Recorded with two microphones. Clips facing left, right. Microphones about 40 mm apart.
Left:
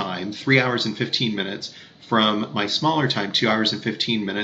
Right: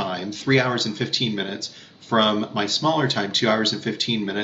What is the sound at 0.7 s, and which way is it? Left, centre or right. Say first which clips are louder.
Speech: left 1 dB; centre.